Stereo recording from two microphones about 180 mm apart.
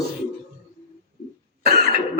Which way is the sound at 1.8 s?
55° right (ahead or behind).